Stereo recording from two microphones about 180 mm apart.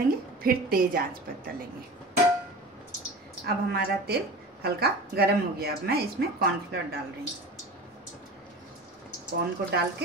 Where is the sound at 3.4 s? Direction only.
60° right (ahead or behind).